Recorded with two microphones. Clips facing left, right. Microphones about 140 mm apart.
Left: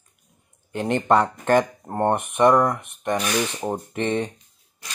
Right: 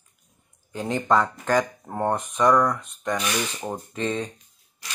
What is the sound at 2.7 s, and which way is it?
Speech, 60° left (ahead or behind).